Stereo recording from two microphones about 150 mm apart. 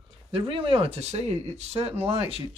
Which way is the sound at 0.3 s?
35° right (ahead or behind).